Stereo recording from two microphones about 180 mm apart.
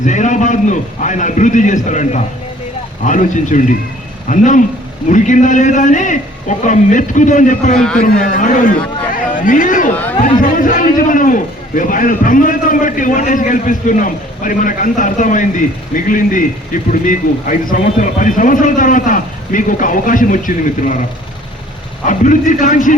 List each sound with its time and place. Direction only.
0.0 s a man's voice: 40° left (ahead or behind)
7.8 s a man's voice: 5° left (ahead or behind)
8.0 s a man's voice: 45° left (ahead or behind)
9.9 s speech: 10° left (ahead or behind)
10.2 s a man's voice: 45° left (ahead or behind)
22.0 s a man's voice: 45° left (ahead or behind)